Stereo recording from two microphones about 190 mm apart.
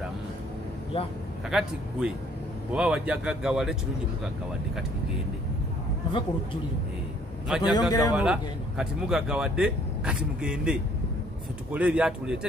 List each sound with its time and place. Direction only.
0.9 s a man's voice: 30° left (ahead or behind)
1.5 s speech: 5° right (ahead or behind)
7.4 s speech: 5° right (ahead or behind)
7.9 s speech: 20° left (ahead or behind)
8.2 s speech: 5° right (ahead or behind)